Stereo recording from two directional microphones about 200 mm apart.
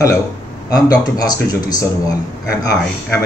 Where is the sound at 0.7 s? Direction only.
15° left (ahead or behind).